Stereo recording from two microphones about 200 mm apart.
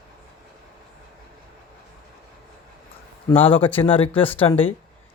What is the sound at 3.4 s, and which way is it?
Speech, 25° left (ahead or behind).